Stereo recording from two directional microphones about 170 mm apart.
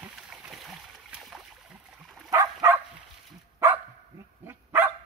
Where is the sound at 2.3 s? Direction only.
20° right (ahead or behind).